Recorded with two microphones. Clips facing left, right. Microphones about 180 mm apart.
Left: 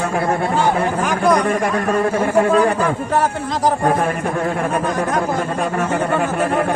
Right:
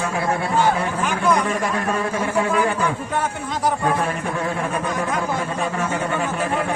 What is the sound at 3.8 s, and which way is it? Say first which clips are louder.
Speech: left 4 dB; 50° left (ahead or behind).